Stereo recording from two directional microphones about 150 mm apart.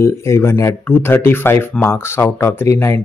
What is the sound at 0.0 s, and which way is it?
A man's voice, 20° left (ahead or behind).